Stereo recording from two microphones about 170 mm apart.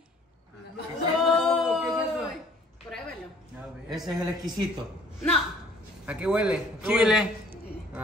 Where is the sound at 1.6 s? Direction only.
Centre (ahead or behind).